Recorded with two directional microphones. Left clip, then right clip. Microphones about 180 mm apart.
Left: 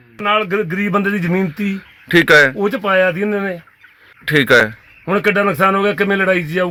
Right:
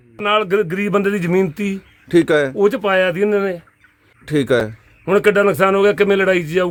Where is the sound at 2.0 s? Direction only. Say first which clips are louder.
Left 5 dB; centre (ahead or behind).